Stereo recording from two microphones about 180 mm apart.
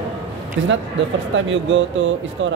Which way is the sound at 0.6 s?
90° right.